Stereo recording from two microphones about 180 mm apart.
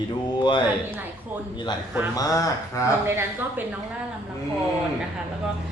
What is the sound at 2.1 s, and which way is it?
Speech, 20° left (ahead or behind).